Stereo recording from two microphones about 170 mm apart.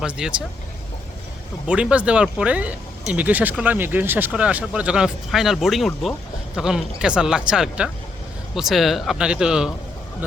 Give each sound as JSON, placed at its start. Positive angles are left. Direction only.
{"t": 0.0, "sound": "speech", "side_deg": -5}
{"t": 1.6, "sound": "speech", "side_deg": -5}